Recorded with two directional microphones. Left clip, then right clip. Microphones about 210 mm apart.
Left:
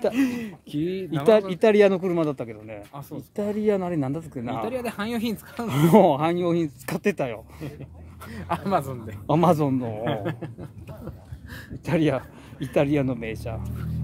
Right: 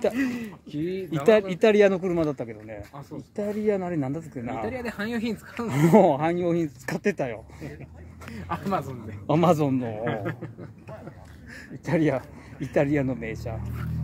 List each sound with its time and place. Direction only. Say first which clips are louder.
0.1 s speech: left 3 dB; 60° left (ahead or behind)
1.5 s speech: left 1 dB; 5° left (ahead or behind)
4.6 s speech: left 2 dB; 55° left (ahead or behind)
5.7 s speech: left 1 dB; 5° left (ahead or behind)
8.4 s speech: left 4 dB; 40° left (ahead or behind)
9.3 s speech: left 1 dB; 10° left (ahead or behind)
10.0 s speech: left 2 dB; 55° left (ahead or behind)
11.8 s speech: left 1 dB; 10° left (ahead or behind)